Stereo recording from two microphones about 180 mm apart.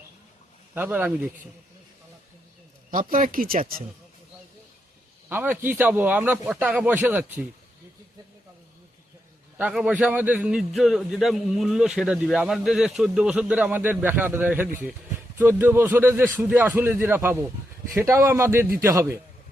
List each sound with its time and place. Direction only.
0.7 s a man's voice: 10° right (ahead or behind)
2.9 s speech: 50° right (ahead or behind)
5.3 s a man's voice: 10° right (ahead or behind)
9.6 s a man's voice: 10° right (ahead or behind)